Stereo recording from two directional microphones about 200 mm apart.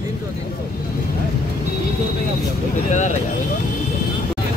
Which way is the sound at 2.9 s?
35° left (ahead or behind).